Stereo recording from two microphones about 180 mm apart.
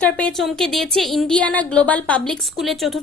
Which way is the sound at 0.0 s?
5° left (ahead or behind).